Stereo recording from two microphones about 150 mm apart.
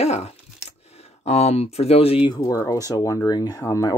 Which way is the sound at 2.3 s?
20° left (ahead or behind).